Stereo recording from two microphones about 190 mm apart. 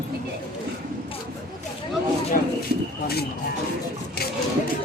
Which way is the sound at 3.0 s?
55° left (ahead or behind).